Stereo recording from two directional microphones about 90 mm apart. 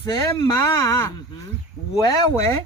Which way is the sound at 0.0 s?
45° left (ahead or behind).